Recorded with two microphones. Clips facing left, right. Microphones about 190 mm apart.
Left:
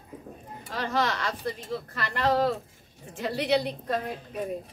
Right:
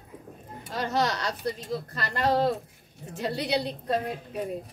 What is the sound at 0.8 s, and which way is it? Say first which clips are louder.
Speech: right 1 dB; 35° right (ahead or behind).